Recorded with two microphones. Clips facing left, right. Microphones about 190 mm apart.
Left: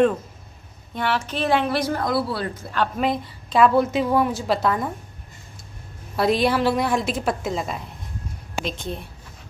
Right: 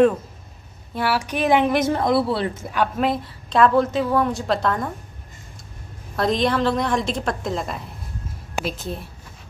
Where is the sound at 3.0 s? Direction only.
Centre (ahead or behind).